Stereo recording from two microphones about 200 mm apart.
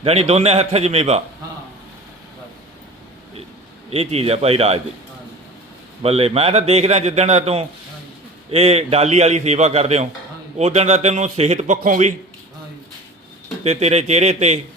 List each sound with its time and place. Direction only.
0.0 s a man's voice: 30° right (ahead or behind)
3.8 s a man's voice: 30° right (ahead or behind)
6.0 s a man's voice: 30° right (ahead or behind)
13.7 s a man's voice: 35° right (ahead or behind)